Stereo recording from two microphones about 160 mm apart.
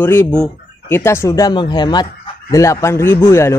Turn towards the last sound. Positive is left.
turn(degrees=15)  # may be behind; listen again after turning